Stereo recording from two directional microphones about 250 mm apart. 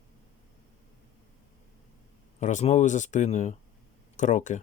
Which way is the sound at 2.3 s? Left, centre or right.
Left.